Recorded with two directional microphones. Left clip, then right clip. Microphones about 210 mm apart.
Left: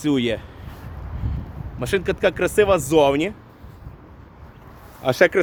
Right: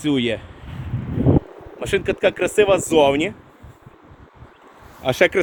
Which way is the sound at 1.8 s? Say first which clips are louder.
Right 1 dB; 10° right (ahead or behind).